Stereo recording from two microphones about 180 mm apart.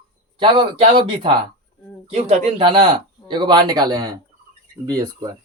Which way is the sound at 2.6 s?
25° right (ahead or behind).